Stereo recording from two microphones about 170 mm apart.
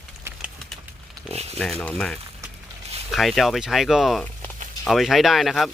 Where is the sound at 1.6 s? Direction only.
5° left (ahead or behind).